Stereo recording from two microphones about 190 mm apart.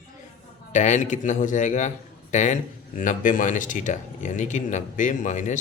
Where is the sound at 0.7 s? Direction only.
40° left (ahead or behind).